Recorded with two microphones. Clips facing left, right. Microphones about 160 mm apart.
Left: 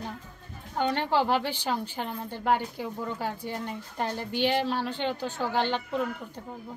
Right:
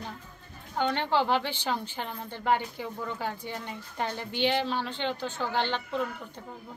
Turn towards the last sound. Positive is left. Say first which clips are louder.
# left 2 dB
turn(degrees=10)  # may be behind; listen again after turning